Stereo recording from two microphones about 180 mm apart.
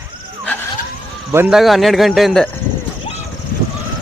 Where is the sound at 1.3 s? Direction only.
10° right (ahead or behind).